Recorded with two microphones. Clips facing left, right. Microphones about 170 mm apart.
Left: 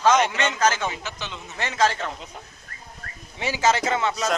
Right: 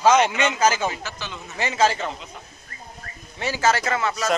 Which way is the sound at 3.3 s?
15° left (ahead or behind).